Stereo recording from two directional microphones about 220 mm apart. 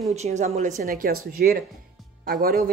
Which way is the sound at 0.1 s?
30° right (ahead or behind).